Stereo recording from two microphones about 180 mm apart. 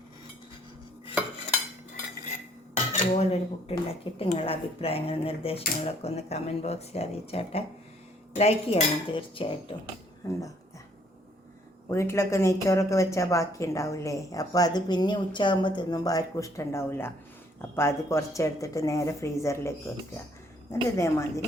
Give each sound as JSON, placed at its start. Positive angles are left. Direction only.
{"t": 2.7, "sound": "cutlery", "side_deg": 40}
{"t": 4.2, "sound": "speech", "side_deg": 30}
{"t": 8.4, "sound": "cutlery", "side_deg": 35}
{"t": 10.2, "sound": "cutlery", "side_deg": 20}
{"t": 11.9, "sound": "a woman's voice", "side_deg": 15}